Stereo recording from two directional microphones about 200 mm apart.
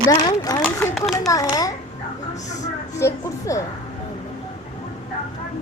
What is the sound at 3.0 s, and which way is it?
Speech, 15° left (ahead or behind).